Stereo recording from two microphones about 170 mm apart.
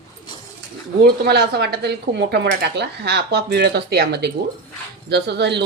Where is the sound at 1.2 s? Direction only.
70° right (ahead or behind).